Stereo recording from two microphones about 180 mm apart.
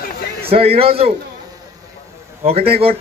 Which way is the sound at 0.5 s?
30° right (ahead or behind).